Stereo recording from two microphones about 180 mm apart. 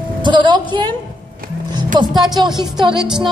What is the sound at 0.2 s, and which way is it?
Speech, 25° right (ahead or behind).